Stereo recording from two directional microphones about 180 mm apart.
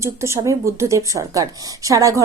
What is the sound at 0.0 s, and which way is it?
A woman's voice, 15° right (ahead or behind).